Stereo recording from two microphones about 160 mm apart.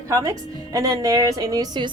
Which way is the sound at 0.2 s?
20° right (ahead or behind).